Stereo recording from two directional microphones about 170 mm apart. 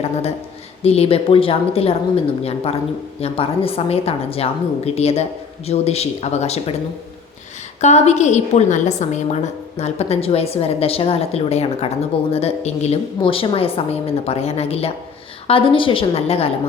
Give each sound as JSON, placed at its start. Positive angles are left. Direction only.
{"t": 0.0, "sound": "a woman's voice", "side_deg": 40}
{"t": 7.8, "sound": "a woman's voice", "side_deg": 40}